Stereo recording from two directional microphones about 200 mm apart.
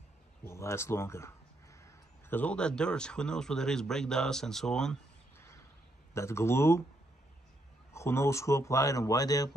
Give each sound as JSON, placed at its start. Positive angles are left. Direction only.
{"t": 0.5, "sound": "a man's voice", "side_deg": 15}
{"t": 6.1, "sound": "speech", "side_deg": 15}
{"t": 7.9, "sound": "speech", "side_deg": 15}